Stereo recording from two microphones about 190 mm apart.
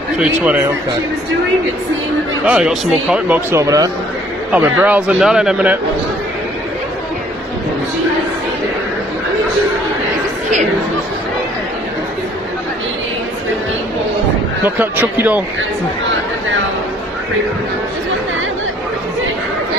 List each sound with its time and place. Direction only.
2.4 s speech: 5° right (ahead or behind)
3.5 s a man's voice: 20° right (ahead or behind)
14.6 s a man's voice: 10° right (ahead or behind)